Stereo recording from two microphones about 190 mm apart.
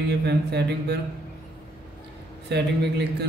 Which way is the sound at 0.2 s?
60° right (ahead or behind).